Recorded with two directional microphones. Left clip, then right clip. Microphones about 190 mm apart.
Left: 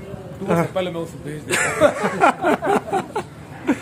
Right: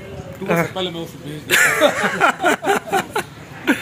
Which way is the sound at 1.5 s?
Centre (ahead or behind).